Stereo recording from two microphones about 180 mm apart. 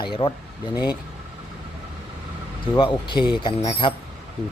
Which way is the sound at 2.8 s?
25° left (ahead or behind).